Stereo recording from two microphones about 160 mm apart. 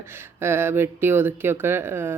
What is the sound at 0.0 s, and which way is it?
A woman's voice, 15° right (ahead or behind).